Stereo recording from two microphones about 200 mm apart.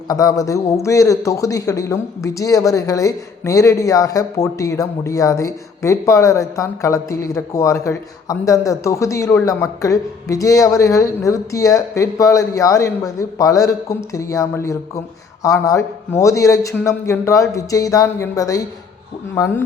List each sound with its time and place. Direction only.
0.1 s speech: 15° left (ahead or behind)